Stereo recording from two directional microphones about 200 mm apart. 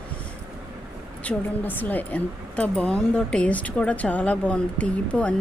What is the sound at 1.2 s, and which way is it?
Speech, 10° left (ahead or behind).